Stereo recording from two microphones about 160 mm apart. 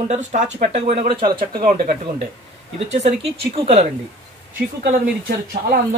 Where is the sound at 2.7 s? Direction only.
45° right (ahead or behind).